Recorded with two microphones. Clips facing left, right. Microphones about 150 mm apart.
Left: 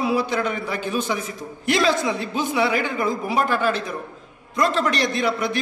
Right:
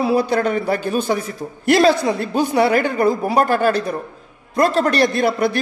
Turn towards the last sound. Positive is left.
turn(degrees=-40)  # may be behind; listen again after turning